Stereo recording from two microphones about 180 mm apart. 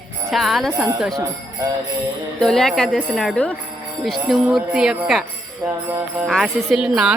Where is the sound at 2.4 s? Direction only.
5° left (ahead or behind).